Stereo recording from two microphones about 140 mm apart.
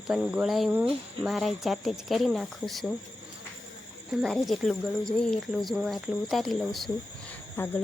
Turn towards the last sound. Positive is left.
turn(degrees=15)  # may be behind; listen again after turning